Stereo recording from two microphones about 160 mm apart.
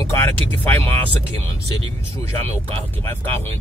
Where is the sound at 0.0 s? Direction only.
15° left (ahead or behind).